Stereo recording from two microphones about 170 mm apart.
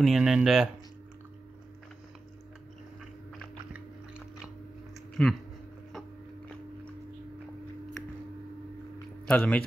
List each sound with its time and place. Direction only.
0.0 s speech: centre (ahead or behind)
3.3 s biting: 5° right (ahead or behind)
5.2 s speech: 5° left (ahead or behind)
9.2 s speech: 5° left (ahead or behind)